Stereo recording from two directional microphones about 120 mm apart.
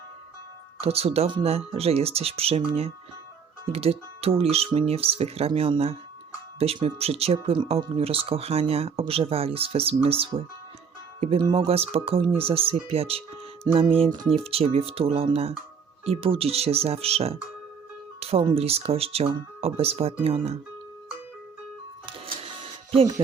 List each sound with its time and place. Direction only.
0.8 s speech: 55° right (ahead or behind)
11.5 s speech: 55° right (ahead or behind)
13.7 s music: 30° right (ahead or behind)
14.3 s speech: 55° right (ahead or behind)
18.2 s music: 55° right (ahead or behind)
18.5 s speech: 55° right (ahead or behind)
22.0 s music: 50° right (ahead or behind)